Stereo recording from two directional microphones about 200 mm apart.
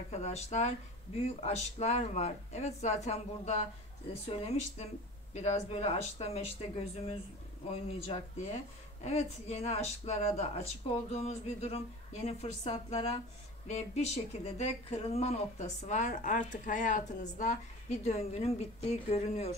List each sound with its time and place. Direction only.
0.1 s speech: 35° left (ahead or behind)
7.7 s speech: 30° left (ahead or behind)